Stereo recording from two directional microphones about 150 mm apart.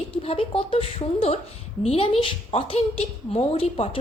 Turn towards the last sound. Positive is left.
turn(degrees=45)  # may be behind; listen again after turning